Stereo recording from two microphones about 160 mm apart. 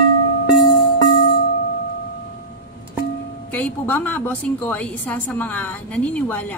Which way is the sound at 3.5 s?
10° left (ahead or behind).